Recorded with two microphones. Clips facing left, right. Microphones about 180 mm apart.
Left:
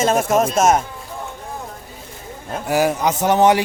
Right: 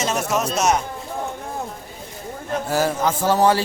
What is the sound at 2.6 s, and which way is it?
Speech, 15° left (ahead or behind).